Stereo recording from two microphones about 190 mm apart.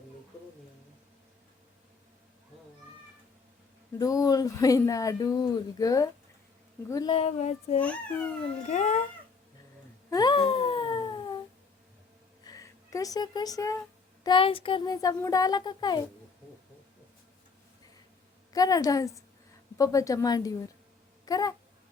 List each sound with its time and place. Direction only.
3.9 s speech: 20° left (ahead or behind)
7.1 s speech: 35° left (ahead or behind)
10.1 s wail: 20° left (ahead or behind)
12.5 s speech: 15° left (ahead or behind)
14.3 s speech: 25° left (ahead or behind)
18.5 s speech: 20° left (ahead or behind)